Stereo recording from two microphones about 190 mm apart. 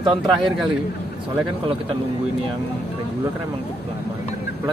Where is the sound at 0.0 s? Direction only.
25° right (ahead or behind).